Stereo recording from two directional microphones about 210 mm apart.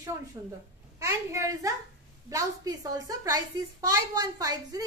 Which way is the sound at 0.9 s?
15° right (ahead or behind).